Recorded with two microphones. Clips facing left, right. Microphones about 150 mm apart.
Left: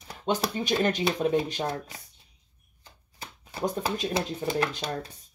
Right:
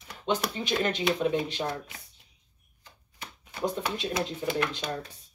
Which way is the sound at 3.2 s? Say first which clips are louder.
Left 1 dB; 30° left (ahead or behind).